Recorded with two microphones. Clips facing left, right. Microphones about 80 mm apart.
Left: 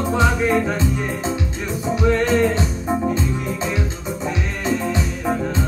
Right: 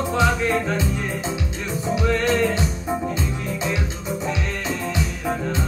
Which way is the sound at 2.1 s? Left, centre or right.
Centre.